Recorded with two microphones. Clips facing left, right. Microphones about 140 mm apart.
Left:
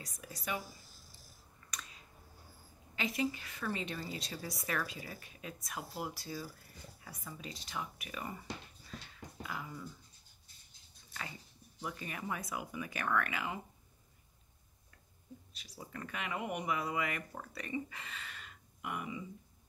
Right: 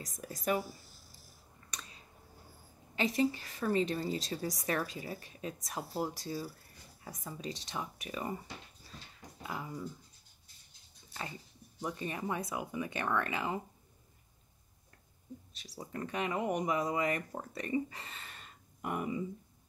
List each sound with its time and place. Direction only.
0.0 s a woman's voice: 40° right (ahead or behind)
1.7 s a sound: 30° right (ahead or behind)
3.0 s a woman's voice: 35° right (ahead or behind)
9.4 s speech: 25° right (ahead or behind)
11.8 s speech: 25° right (ahead or behind)
15.8 s a woman's voice: 30° right (ahead or behind)